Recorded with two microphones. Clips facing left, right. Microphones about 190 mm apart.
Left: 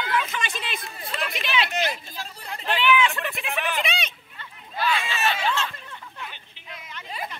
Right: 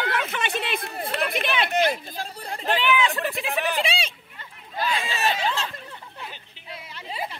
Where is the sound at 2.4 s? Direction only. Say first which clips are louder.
Even; 40° right (ahead or behind).